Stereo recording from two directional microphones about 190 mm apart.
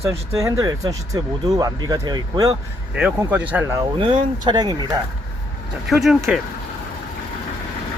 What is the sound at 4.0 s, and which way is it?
Speech, 25° right (ahead or behind).